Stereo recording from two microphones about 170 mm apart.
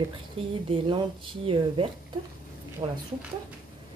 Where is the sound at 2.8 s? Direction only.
25° right (ahead or behind).